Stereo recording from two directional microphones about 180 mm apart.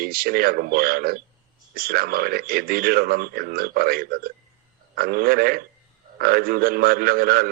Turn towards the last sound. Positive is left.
turn(degrees=-55)  # may be behind; listen again after turning